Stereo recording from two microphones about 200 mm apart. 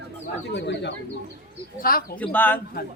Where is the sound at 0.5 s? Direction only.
60° left (ahead or behind).